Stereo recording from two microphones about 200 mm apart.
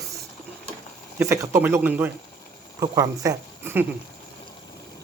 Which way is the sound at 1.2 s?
15° right (ahead or behind).